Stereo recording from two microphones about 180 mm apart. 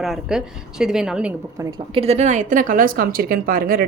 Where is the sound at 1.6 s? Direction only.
20° right (ahead or behind).